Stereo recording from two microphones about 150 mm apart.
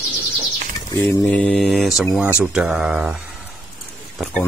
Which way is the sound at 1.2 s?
10° left (ahead or behind).